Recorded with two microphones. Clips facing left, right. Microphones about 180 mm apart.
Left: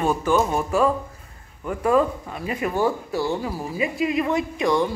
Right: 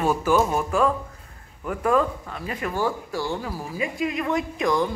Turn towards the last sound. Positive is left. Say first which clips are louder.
# left 2 dB
turn(degrees=0)  # may be behind; listen again after turning